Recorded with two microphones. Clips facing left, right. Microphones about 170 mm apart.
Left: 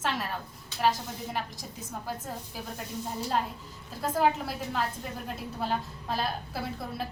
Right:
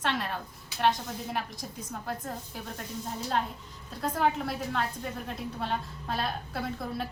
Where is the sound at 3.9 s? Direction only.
5° left (ahead or behind).